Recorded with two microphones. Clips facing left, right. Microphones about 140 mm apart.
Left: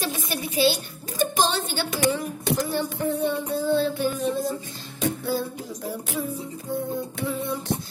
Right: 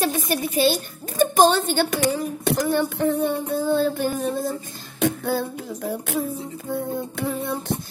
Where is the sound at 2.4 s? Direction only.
65° right (ahead or behind); by 4.5 s 45° right (ahead or behind).